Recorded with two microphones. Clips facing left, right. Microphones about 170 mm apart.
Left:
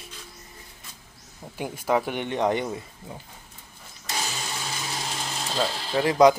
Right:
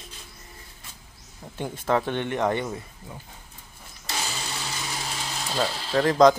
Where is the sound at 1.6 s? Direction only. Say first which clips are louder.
Even; 10° left (ahead or behind).